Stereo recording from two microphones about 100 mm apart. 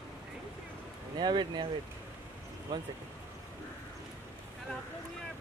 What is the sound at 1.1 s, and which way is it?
Speech, 45° right (ahead or behind).